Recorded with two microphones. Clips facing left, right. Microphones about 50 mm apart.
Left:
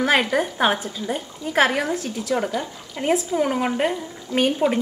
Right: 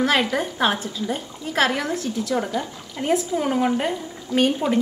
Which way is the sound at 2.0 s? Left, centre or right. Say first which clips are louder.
Right 1 dB; left.